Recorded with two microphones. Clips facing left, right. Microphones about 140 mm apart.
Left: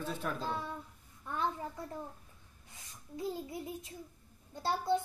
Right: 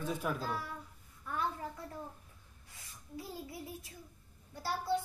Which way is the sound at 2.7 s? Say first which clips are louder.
Left 1 dB; 20° left (ahead or behind).